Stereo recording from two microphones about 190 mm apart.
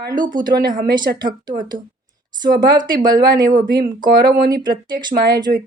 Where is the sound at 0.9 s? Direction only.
20° right (ahead or behind).